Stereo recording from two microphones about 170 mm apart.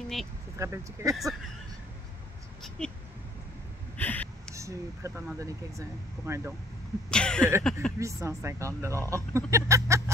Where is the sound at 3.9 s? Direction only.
10° left (ahead or behind).